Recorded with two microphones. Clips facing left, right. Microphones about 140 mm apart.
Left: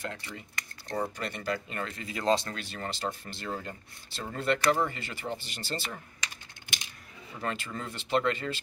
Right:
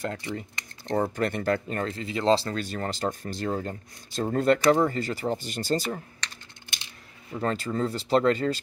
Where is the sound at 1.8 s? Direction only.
35° right (ahead or behind).